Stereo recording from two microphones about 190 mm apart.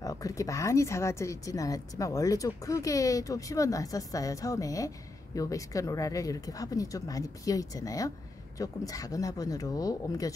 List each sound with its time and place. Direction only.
0.0 s speech: 20° left (ahead or behind)